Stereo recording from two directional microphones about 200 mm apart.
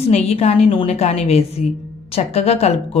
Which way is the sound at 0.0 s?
35° left (ahead or behind).